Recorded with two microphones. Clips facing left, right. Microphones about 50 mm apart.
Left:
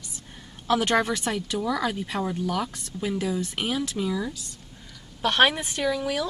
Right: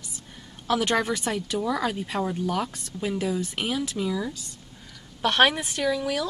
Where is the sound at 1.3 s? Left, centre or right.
Centre.